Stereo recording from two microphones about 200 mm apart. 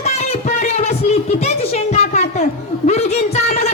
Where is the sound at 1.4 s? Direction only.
30° left (ahead or behind).